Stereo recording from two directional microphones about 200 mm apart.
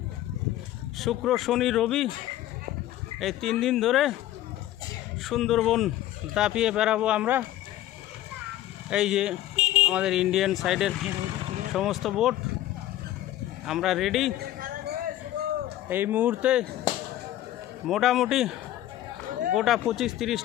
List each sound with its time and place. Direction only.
0.9 s speech: centre (ahead or behind)
3.2 s speech: centre (ahead or behind)
5.2 s speech: centre (ahead or behind)
8.9 s speech: 5° right (ahead or behind)
13.7 s speech: centre (ahead or behind)
14.6 s a sound: 45° right (ahead or behind)
15.9 s speech: 10° right (ahead or behind)
17.8 s speech: centre (ahead or behind)
19.5 s speech: centre (ahead or behind)